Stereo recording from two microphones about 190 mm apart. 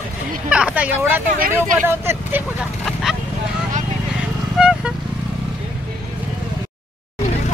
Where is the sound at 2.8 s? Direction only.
Centre (ahead or behind).